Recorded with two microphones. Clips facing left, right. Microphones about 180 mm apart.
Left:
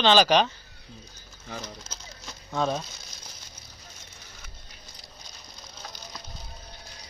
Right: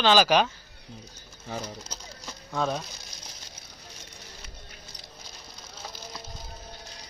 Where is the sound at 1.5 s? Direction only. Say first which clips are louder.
Right 3 dB; 10° right (ahead or behind).